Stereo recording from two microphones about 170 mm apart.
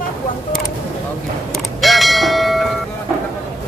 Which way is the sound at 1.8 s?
Centre (ahead or behind).